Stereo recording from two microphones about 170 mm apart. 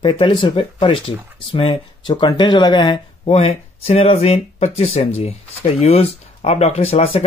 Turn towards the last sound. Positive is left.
turn(degrees=35)  # may be behind; listen again after turning